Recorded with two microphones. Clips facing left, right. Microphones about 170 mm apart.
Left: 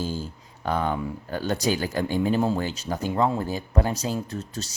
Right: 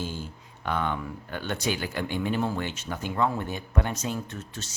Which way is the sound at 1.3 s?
35° left (ahead or behind).